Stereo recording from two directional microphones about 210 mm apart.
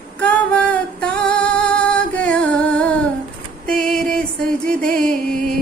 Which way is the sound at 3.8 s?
5° left (ahead or behind).